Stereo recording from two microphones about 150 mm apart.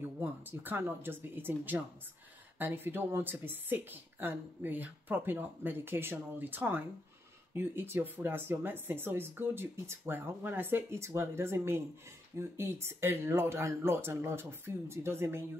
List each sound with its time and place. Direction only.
0.0 s speech: 15° right (ahead or behind)